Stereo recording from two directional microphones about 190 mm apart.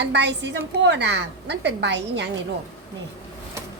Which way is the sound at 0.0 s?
65° right (ahead or behind).